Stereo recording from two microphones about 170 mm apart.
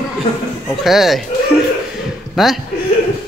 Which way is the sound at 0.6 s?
Centre (ahead or behind).